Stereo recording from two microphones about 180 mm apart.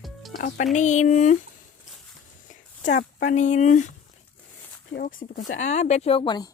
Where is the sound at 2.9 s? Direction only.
45° left (ahead or behind).